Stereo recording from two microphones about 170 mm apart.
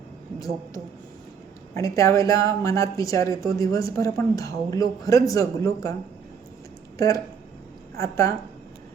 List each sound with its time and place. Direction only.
0.3 s speech: 20° left (ahead or behind)
7.9 s a woman's voice: 20° left (ahead or behind)